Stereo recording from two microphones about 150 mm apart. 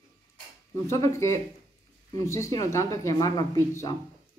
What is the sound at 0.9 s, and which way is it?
Speech, 20° left (ahead or behind).